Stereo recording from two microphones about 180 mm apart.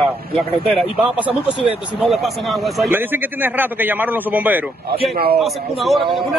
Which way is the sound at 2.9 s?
10° right (ahead or behind).